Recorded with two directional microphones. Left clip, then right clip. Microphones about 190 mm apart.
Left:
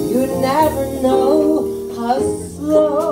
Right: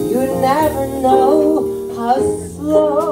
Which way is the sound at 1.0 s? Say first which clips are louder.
Right 2 dB; 30° right (ahead or behind).